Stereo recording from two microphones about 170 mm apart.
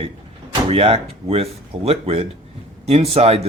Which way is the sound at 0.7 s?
35° right (ahead or behind).